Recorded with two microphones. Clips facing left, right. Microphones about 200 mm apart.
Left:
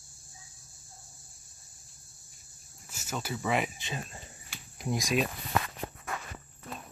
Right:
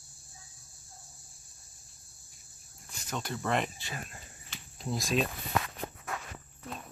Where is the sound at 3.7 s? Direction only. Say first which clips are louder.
Left 3 dB; 20° left (ahead or behind).